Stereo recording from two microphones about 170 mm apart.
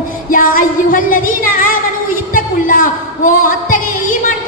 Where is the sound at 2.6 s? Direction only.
55° left (ahead or behind).